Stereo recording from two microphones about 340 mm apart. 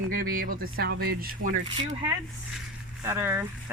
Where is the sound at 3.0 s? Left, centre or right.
Centre.